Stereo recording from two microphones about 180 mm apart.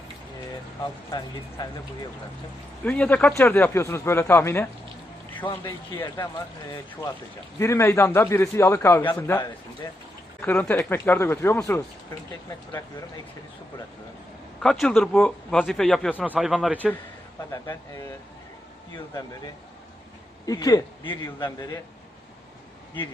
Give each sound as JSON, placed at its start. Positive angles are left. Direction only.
{"t": 2.8, "sound": "speech", "side_deg": 10}
{"t": 5.3, "sound": "a sound", "side_deg": 10}
{"t": 7.6, "sound": "speech", "side_deg": 15}
{"t": 9.8, "sound": "speech", "side_deg": 20}
{"t": 10.4, "sound": "speech", "side_deg": 10}
{"t": 14.6, "sound": "speech", "side_deg": 0}
{"t": 16.1, "sound": "a man's voice", "side_deg": -10}
{"t": 20.4, "sound": "speech", "side_deg": 20}